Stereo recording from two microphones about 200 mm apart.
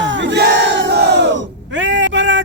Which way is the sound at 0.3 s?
60° right (ahead or behind).